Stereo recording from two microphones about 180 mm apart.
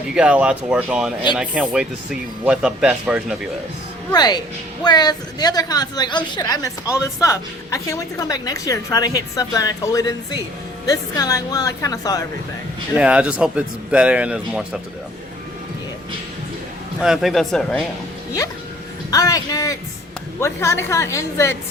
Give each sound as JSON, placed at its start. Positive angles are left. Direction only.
{"t": 0.1, "sound": "speech", "side_deg": -5}
{"t": 4.1, "sound": "a woman's voice", "side_deg": 25}
{"t": 13.0, "sound": "speech", "side_deg": -5}
{"t": 17.0, "sound": "speech", "side_deg": 0}
{"t": 19.1, "sound": "a woman's voice", "side_deg": 20}